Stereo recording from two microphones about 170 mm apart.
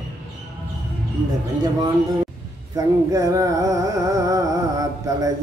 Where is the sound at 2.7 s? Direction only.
20° right (ahead or behind).